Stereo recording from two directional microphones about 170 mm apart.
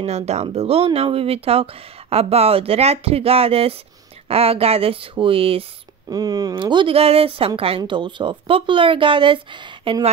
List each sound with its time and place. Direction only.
0.0 s speech: 40° right (ahead or behind)
6.0 s speech: 20° right (ahead or behind)